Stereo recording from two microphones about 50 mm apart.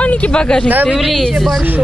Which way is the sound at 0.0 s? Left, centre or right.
Left.